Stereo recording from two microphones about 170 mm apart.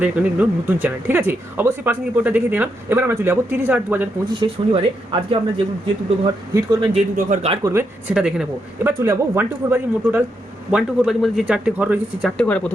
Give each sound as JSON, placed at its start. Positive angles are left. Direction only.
{"t": 0.0, "sound": "speech", "side_deg": -10}
{"t": 4.4, "sound": "speech", "side_deg": -30}
{"t": 7.3, "sound": "speech", "side_deg": -40}
{"t": 7.6, "sound": "speech", "side_deg": -15}
{"t": 8.1, "sound": "a man's voice", "side_deg": -5}
{"t": 12.4, "sound": "speech", "side_deg": 5}